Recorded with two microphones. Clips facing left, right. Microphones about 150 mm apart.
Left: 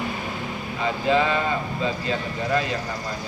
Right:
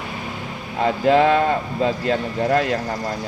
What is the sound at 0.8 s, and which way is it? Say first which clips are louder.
Speech: right 6 dB; 60° right (ahead or behind).